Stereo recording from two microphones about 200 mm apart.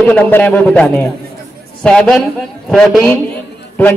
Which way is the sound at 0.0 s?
10° left (ahead or behind).